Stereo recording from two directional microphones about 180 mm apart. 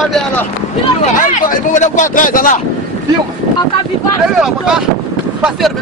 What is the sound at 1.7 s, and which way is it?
Speech, 45° left (ahead or behind).